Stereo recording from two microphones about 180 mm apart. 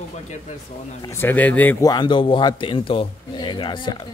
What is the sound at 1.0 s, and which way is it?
A man's voice, 10° left (ahead or behind).